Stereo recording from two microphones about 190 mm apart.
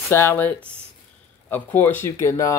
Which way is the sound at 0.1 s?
10° left (ahead or behind).